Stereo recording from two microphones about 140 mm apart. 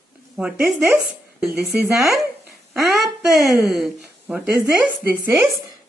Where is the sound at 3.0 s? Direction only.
Centre (ahead or behind).